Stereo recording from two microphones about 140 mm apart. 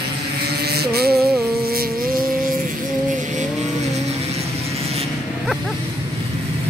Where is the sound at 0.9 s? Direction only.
90° right.